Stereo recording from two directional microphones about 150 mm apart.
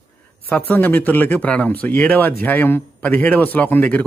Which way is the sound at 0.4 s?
10° left (ahead or behind).